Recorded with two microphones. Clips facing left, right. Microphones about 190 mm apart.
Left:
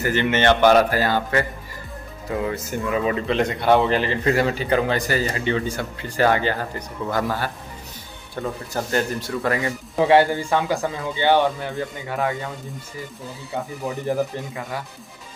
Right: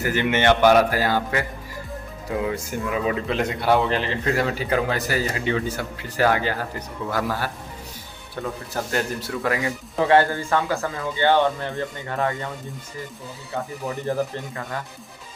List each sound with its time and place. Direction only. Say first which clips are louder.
0.0 s speech: left 1 dB; 10° right (ahead or behind)
2.4 s speech: left 2 dB; 5° right (ahead or behind)
8.9 s speech: left 3 dB; centre (ahead or behind)
9.9 s speech: left 2 dB; 15° left (ahead or behind)
14.0 s speech: left 2 dB; 15° left (ahead or behind)